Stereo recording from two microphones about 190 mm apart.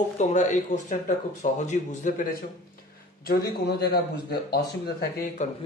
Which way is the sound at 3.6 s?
55° left (ahead or behind).